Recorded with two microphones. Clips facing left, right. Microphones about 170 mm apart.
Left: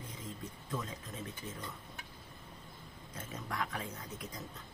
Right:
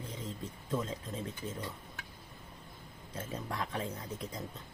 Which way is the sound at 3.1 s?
30° right (ahead or behind).